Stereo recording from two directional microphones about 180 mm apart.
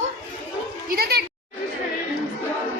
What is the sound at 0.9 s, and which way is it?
Speech, 60° right (ahead or behind).